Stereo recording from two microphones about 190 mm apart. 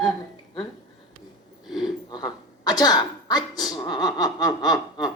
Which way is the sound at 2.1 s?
20° left (ahead or behind).